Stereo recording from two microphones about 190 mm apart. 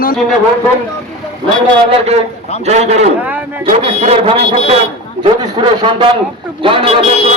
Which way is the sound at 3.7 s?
35° right (ahead or behind).